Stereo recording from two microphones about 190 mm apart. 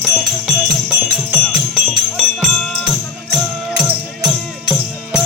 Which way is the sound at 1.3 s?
5° right (ahead or behind).